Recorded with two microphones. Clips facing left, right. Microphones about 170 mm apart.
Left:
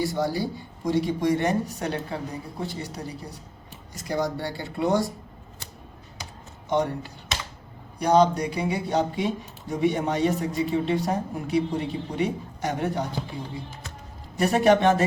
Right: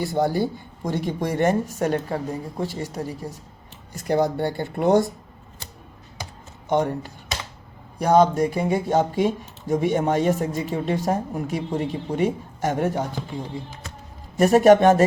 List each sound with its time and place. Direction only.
0.1 s speech: 55° right (ahead or behind)
7.9 s speech: 50° right (ahead or behind)
14.3 s speech: 45° right (ahead or behind)